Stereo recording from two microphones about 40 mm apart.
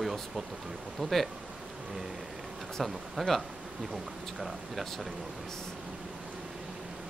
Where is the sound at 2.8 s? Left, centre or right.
Centre.